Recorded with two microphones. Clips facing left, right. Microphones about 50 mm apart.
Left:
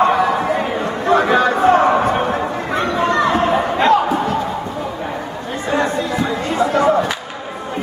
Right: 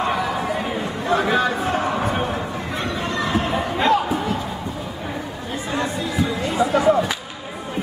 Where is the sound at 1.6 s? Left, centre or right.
Left.